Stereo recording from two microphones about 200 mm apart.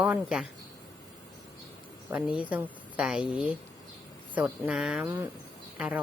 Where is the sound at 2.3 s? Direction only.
5° right (ahead or behind).